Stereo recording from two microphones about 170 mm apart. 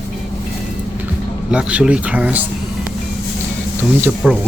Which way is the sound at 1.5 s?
5° right (ahead or behind).